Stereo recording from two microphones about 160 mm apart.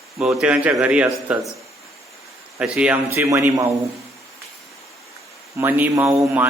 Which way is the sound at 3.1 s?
20° right (ahead or behind).